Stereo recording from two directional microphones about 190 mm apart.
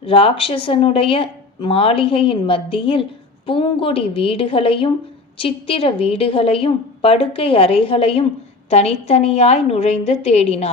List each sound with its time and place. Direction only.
0.0 s a woman's voice: 30° left (ahead or behind)